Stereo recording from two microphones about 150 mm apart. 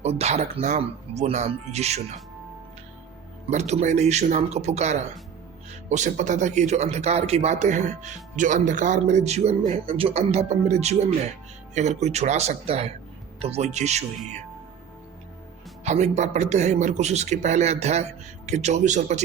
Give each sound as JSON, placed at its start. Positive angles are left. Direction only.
{"t": 0.0, "sound": "speech", "side_deg": -45}
{"t": 3.5, "sound": "speech", "side_deg": -50}
{"t": 15.8, "sound": "speech", "side_deg": -50}